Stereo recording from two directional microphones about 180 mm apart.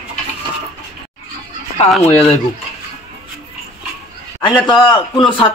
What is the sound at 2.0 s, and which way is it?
Speech, 10° left (ahead or behind).